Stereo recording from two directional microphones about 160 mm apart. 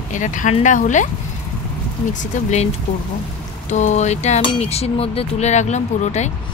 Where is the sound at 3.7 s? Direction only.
45° left (ahead or behind).